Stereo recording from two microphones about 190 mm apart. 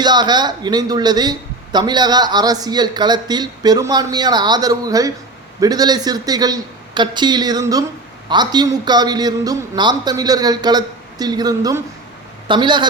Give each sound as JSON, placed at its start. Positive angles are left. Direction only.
{"t": 0.0, "sound": "a man's voice", "side_deg": -20}